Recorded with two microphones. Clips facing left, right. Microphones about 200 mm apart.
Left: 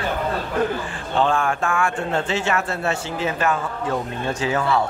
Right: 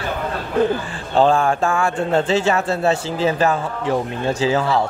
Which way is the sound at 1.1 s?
35° right (ahead or behind).